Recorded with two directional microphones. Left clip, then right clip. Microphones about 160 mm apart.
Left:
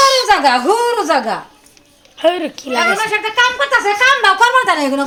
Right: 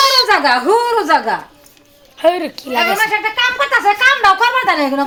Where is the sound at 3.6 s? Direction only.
65° left (ahead or behind).